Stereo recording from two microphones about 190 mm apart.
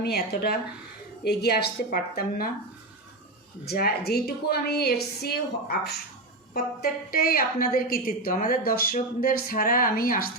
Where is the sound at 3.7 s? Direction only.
55° left (ahead or behind).